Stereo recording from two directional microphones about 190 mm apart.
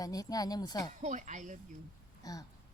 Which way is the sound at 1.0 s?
40° right (ahead or behind).